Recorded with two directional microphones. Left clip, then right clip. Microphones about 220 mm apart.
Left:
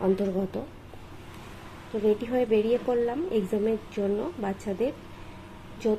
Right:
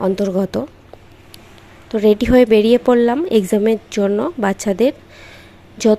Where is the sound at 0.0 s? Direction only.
40° right (ahead or behind).